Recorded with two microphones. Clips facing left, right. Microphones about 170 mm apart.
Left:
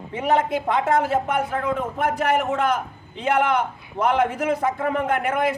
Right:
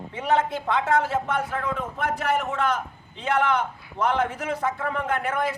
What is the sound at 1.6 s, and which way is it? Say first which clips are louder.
Speech: left 4 dB; 50° left (ahead or behind).